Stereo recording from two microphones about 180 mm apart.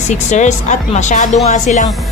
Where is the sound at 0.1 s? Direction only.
40° left (ahead or behind).